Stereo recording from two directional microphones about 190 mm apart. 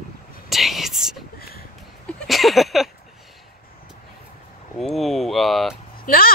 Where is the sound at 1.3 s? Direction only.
50° left (ahead or behind).